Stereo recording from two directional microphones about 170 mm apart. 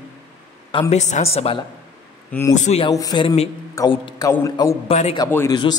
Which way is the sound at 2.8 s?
25° left (ahead or behind).